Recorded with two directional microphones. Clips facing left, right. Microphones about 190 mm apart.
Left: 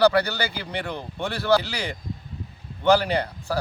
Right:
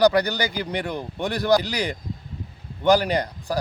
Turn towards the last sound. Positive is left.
turn(degrees=-15)  # may be behind; listen again after turning